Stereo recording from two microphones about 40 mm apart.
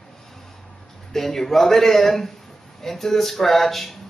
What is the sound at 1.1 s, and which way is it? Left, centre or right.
A man's voice, centre.